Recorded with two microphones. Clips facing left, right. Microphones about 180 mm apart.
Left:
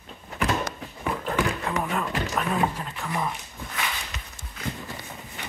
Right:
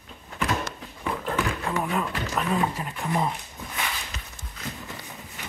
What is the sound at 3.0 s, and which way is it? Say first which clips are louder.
Speech: right 3 dB; 20° right (ahead or behind).